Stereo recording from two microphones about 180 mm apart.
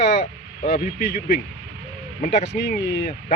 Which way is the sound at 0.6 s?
65° left (ahead or behind).